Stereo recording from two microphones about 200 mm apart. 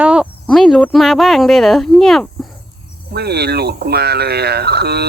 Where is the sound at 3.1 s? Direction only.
55° right (ahead or behind).